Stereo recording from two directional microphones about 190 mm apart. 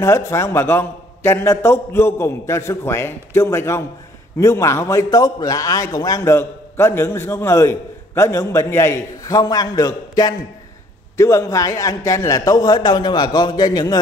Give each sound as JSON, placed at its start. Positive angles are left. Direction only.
{"t": 0.3, "sound": "a man's voice", "side_deg": 15}